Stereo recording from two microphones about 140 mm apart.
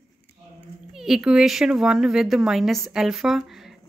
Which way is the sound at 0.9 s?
5° right (ahead or behind).